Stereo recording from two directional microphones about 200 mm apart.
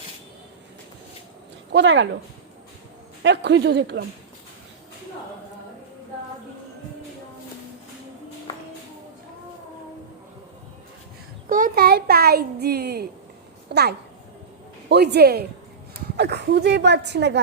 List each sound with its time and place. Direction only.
1.7 s a woman's voice: 65° right (ahead or behind)
3.2 s a woman's voice: 60° right (ahead or behind)
11.4 s a child's voice: 45° right (ahead or behind); by 17.4 s 60° right (ahead or behind)